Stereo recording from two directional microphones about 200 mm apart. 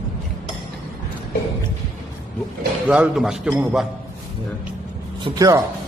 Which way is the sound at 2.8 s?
5° right (ahead or behind).